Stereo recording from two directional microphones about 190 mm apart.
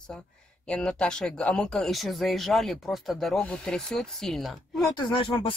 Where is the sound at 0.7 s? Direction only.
5° left (ahead or behind).